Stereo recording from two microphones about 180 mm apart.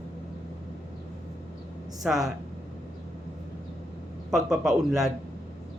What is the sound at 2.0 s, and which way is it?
Speech, 5° right (ahead or behind).